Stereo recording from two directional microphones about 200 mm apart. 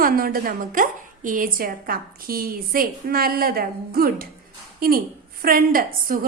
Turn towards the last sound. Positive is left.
turn(degrees=-45)  # may be behind; listen again after turning